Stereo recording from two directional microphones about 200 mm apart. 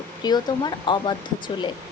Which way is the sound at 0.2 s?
20° left (ahead or behind).